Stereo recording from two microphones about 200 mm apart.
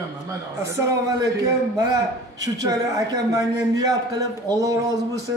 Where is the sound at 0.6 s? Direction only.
15° right (ahead or behind).